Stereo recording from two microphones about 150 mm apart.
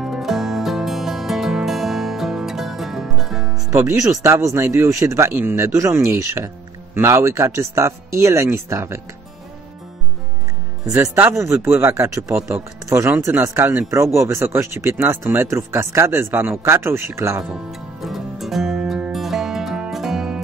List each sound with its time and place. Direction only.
0.0 s music: centre (ahead or behind)
3.7 s speech: 20° right (ahead or behind)
10.9 s speech: 20° right (ahead or behind)
17.6 s music: centre (ahead or behind)